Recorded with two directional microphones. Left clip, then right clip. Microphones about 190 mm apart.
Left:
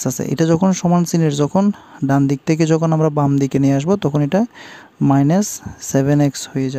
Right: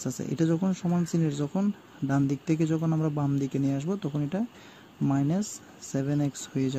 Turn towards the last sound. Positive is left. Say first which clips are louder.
# left 9 dB
turn(degrees=30)  # may be behind; listen again after turning